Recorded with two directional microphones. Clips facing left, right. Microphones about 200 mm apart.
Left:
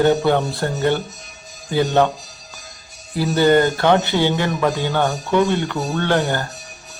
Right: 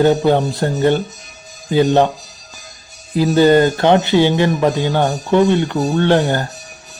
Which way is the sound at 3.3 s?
20° right (ahead or behind).